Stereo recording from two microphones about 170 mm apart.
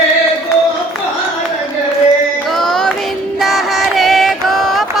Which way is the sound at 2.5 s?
Centre (ahead or behind).